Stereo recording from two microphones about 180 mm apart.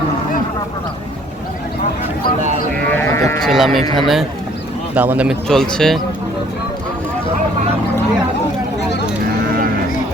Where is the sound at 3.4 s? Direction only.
Centre (ahead or behind).